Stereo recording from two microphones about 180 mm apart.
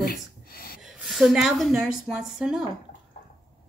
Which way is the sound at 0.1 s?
55° left (ahead or behind).